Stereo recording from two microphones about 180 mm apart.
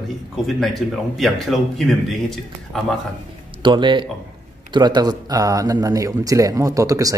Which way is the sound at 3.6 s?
25° right (ahead or behind).